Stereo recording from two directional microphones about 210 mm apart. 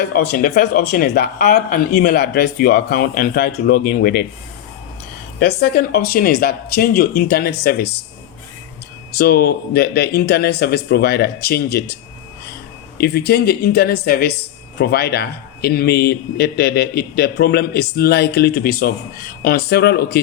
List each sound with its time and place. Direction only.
0.0 s speech: 45° left (ahead or behind)
5.4 s speech: 50° left (ahead or behind)
9.1 s speech: 50° left (ahead or behind)
13.0 s speech: 50° left (ahead or behind)